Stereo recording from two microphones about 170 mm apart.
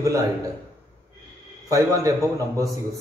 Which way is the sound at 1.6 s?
20° right (ahead or behind).